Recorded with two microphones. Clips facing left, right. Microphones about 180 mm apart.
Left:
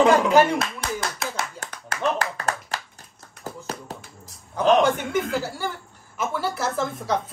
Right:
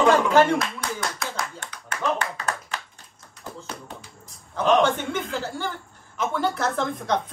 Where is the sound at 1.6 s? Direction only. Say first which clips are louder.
Left 2 dB; 45° left (ahead or behind).